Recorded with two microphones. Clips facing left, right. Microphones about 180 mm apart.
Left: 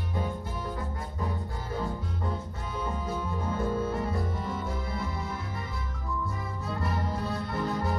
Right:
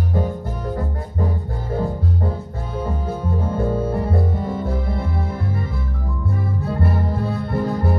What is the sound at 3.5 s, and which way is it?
Music, 55° right (ahead or behind).